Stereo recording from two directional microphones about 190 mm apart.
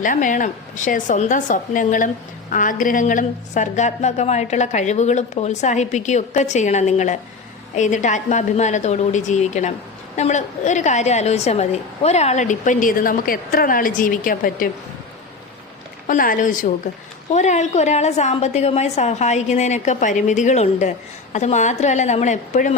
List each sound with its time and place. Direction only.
0.0 s a woman's voice: 45° left (ahead or behind)
16.0 s a woman's voice: 45° left (ahead or behind)